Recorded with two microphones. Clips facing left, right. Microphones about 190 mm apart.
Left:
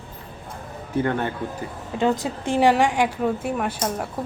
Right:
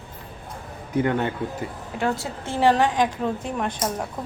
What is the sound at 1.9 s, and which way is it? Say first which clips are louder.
A woman's voice: left 4 dB; 20° left (ahead or behind).